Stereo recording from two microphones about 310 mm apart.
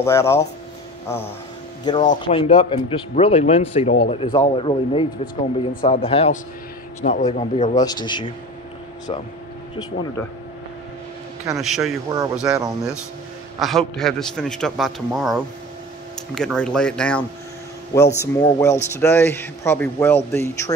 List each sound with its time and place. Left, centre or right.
0.0 s a man's voice: centre
2.0 s a man's voice: centre
11.4 s a man's voice: centre
18.2 s a man's voice: centre